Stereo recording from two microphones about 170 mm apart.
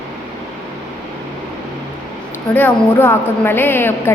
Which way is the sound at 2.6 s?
10° left (ahead or behind).